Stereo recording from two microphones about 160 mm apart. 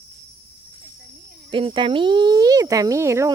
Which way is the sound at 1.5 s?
30° right (ahead or behind).